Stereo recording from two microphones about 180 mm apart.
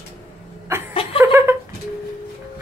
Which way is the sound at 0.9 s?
30° left (ahead or behind).